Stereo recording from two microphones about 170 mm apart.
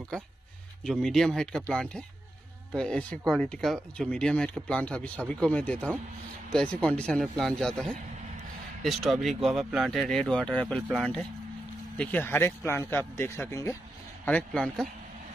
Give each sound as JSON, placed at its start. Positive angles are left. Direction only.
{"t": 0.1, "sound": "speech", "side_deg": 5}